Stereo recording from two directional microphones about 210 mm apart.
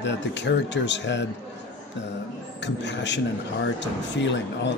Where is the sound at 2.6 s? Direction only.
55° left (ahead or behind).